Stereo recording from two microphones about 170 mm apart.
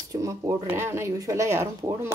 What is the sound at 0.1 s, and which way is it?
Speech, 20° right (ahead or behind).